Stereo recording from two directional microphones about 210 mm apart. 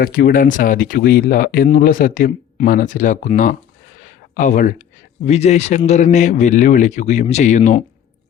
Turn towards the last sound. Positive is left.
turn(degrees=35)  # may be behind; listen again after turning